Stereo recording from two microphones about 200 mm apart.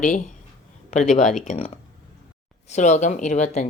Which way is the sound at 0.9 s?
35° left (ahead or behind).